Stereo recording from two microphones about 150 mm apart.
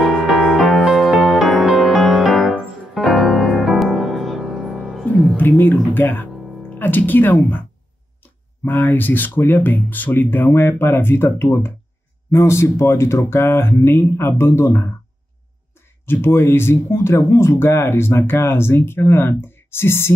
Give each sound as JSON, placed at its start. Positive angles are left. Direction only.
{"t": 0.0, "sound": "music", "side_deg": 0}
{"t": 5.4, "sound": "music", "side_deg": 15}
{"t": 6.7, "sound": "speech", "side_deg": 10}
{"t": 16.1, "sound": "speech", "side_deg": 15}